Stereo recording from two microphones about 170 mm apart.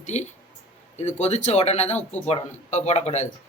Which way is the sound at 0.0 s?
45° left (ahead or behind).